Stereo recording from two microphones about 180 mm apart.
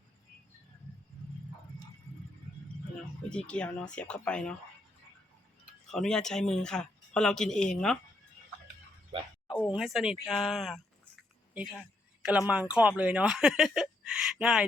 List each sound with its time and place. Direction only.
2.9 s speech: 5° left (ahead or behind)
5.9 s speech: 5° left (ahead or behind)
9.1 s a sound: 30° right (ahead or behind)
9.7 s speech: centre (ahead or behind)